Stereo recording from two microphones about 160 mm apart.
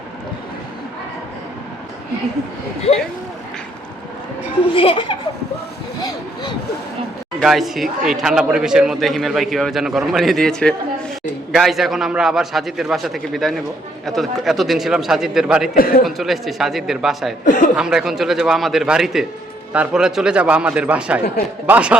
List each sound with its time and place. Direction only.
4.6 s speech: 35° left (ahead or behind)
7.4 s a man's voice: centre (ahead or behind)
15.7 s a man's voice: 65° left (ahead or behind)
16.0 s a man's voice: centre (ahead or behind)
17.4 s a man's voice: 55° left (ahead or behind)
17.7 s a man's voice: 5° right (ahead or behind)